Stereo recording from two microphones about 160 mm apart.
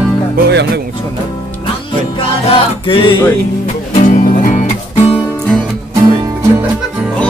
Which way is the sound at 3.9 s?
50° left (ahead or behind).